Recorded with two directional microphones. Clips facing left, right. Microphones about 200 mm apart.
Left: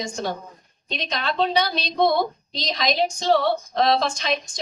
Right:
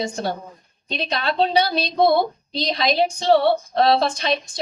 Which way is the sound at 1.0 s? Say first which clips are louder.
Right 3 dB; 35° right (ahead or behind).